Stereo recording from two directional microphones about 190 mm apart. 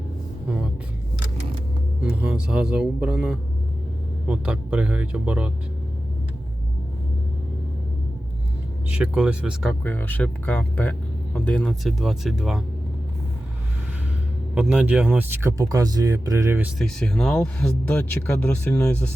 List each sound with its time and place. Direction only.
2.2 s speech: 5° right (ahead or behind)
8.9 s speech: 5° right (ahead or behind)
9.8 s speech: 10° left (ahead or behind)
14.5 s speech: 5° right (ahead or behind)
15.4 s speech: 15° right (ahead or behind)
16.7 s speech: 5° left (ahead or behind)